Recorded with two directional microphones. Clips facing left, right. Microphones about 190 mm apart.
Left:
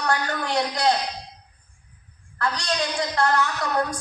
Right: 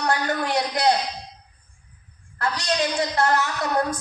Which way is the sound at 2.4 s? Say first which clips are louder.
Right 1 dB; 20° right (ahead or behind).